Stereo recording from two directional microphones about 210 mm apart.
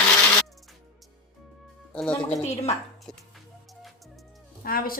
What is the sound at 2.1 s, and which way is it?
Speech, 30° left (ahead or behind).